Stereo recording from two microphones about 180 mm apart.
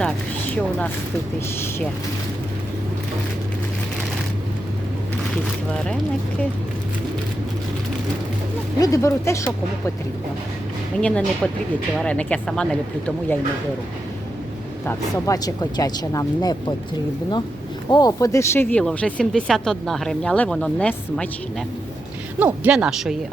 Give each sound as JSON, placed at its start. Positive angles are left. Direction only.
{"t": 8.8, "sound": "speech", "side_deg": 15}
{"t": 11.0, "sound": "speech", "side_deg": 5}
{"t": 14.8, "sound": "speech", "side_deg": 20}
{"t": 17.9, "sound": "speech", "side_deg": 20}
{"t": 22.4, "sound": "speech", "side_deg": -10}